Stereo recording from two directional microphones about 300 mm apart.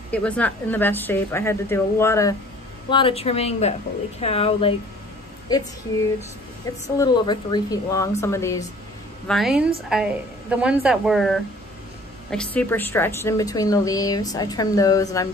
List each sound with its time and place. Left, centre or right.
0.1 s a woman's voice: centre
6.7 s a woman's voice: centre
9.3 s a woman's voice: centre